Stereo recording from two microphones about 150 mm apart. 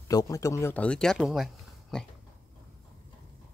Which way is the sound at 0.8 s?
5° left (ahead or behind).